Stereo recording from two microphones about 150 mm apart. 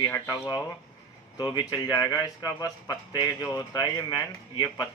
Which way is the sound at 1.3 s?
25° left (ahead or behind).